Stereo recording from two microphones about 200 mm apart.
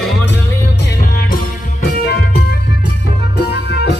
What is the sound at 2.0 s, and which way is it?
Music, 50° left (ahead or behind).